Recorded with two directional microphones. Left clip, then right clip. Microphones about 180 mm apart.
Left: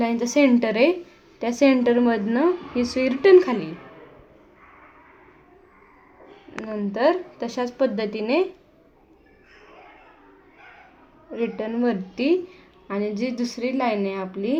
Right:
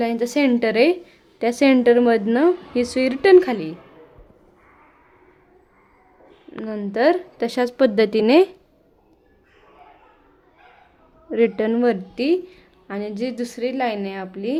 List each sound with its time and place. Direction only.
0.0 s a woman's voice: 25° right (ahead or behind)
6.7 s a woman's voice: 40° right (ahead or behind)
11.3 s a woman's voice: 50° right (ahead or behind); by 14.6 s 25° right (ahead or behind)